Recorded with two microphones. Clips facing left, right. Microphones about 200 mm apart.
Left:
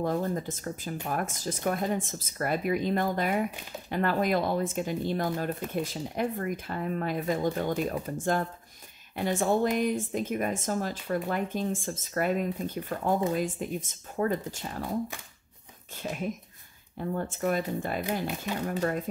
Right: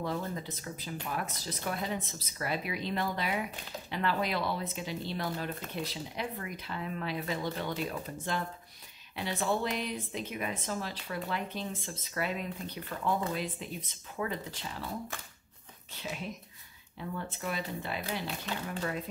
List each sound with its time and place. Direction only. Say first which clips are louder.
0.0 s speech: left 6 dB; 45° left (ahead or behind)
16.0 s speech: left 6 dB; 50° left (ahead or behind)